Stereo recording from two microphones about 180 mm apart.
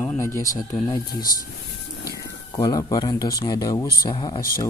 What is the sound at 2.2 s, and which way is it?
Speech, 20° left (ahead or behind).